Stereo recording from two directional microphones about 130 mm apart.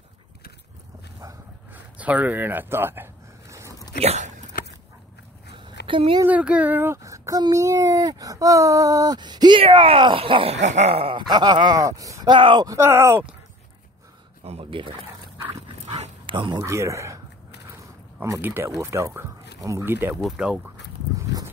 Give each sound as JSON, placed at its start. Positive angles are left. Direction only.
{"t": 1.7, "sound": "a sound", "side_deg": -10}
{"t": 4.0, "sound": "dog", "side_deg": -55}
{"t": 5.5, "sound": "a sound", "side_deg": -40}
{"t": 6.2, "sound": "speech", "side_deg": -10}
{"t": 10.6, "sound": "speech", "side_deg": -65}
{"t": 12.3, "sound": "speech", "side_deg": -40}
{"t": 12.6, "sound": "speech", "side_deg": -20}
{"t": 14.4, "sound": "speech", "side_deg": -50}
{"t": 15.9, "sound": "dog", "side_deg": -45}
{"t": 16.6, "sound": "speech", "side_deg": -20}
{"t": 18.2, "sound": "speech", "side_deg": -20}
{"t": 20.2, "sound": "speech", "side_deg": -5}